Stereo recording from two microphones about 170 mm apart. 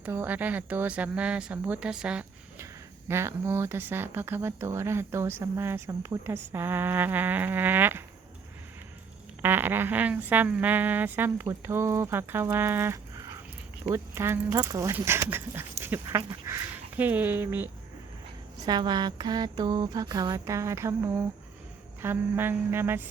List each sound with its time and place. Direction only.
0.0 s speech: 10° right (ahead or behind)
9.4 s speech: 10° right (ahead or behind)
15.8 s dog: 15° right (ahead or behind)
16.1 s speech: 20° right (ahead or behind)
18.5 s mantra: 25° right (ahead or behind)
22.0 s speech: 10° right (ahead or behind)